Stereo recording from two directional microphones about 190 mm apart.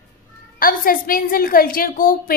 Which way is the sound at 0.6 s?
50° left (ahead or behind).